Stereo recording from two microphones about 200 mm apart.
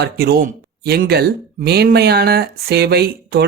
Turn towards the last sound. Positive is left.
turn(degrees=-55)  # may be behind; listen again after turning